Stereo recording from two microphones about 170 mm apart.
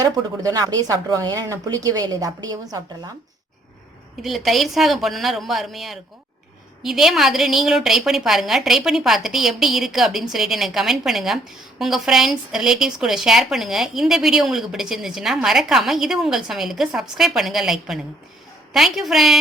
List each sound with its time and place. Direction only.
0.0 s speech: 20° right (ahead or behind)
4.2 s speech: centre (ahead or behind)